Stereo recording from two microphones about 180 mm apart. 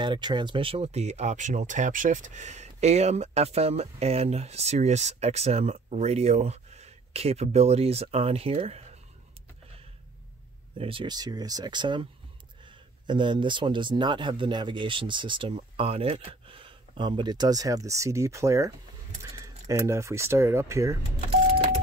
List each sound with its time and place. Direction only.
0.0 s speech: 25° right (ahead or behind)
10.8 s speech: 30° right (ahead or behind)